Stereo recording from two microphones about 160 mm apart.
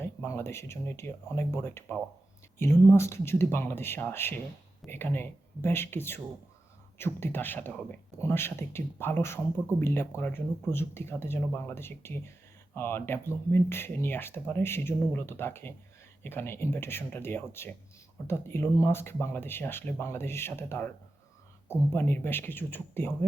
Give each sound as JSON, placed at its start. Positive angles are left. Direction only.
{"t": 0.0, "sound": "speech", "side_deg": 15}